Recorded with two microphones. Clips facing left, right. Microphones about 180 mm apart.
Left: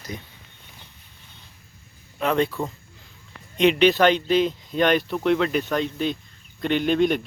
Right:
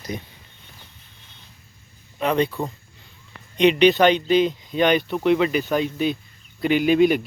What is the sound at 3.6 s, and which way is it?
Speech, centre (ahead or behind).